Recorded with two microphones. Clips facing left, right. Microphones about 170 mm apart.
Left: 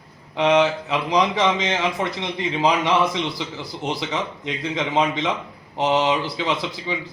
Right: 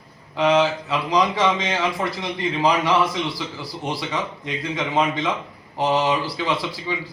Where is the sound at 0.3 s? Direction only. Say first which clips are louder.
Left 1 dB; 20° left (ahead or behind).